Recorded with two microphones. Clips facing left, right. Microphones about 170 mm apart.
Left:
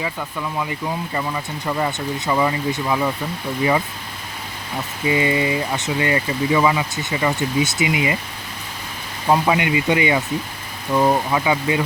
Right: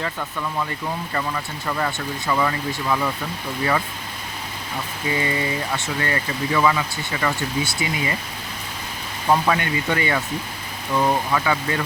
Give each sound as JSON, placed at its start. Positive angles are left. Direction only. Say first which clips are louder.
{"t": 0.0, "sound": "speech", "louder": "left 1 dB", "side_deg": 10}
{"t": 5.0, "sound": "speech", "louder": "left 5 dB", "side_deg": 15}
{"t": 9.2, "sound": "speech", "louder": "left 2 dB", "side_deg": 15}